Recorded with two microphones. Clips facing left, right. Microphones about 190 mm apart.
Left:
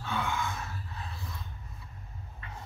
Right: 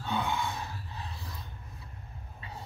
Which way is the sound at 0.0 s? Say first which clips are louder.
Right 1 dB; 20° right (ahead or behind).